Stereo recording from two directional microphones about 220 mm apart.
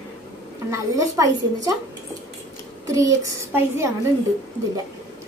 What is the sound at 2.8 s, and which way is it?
A child's voice, 15° right (ahead or behind).